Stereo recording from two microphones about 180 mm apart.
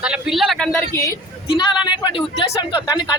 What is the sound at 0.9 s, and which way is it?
Speech, 15° left (ahead or behind).